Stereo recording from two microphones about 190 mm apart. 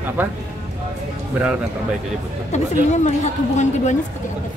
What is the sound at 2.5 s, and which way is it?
Speech, 40° left (ahead or behind).